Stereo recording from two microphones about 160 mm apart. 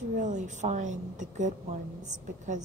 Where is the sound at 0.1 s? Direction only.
50° right (ahead or behind).